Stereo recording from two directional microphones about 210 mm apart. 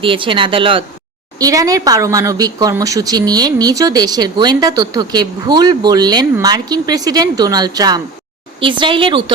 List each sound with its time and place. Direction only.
0.0 s a woman's voice: 25° right (ahead or behind)